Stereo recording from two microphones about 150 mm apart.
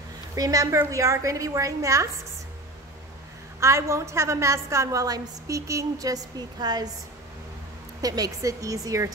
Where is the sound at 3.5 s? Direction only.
20° right (ahead or behind).